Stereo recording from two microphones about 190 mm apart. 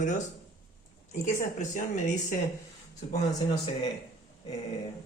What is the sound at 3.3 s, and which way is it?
Speech, 20° left (ahead or behind).